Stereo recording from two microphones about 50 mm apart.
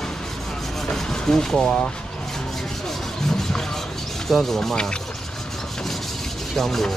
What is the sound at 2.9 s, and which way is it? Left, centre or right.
Vehicle, centre.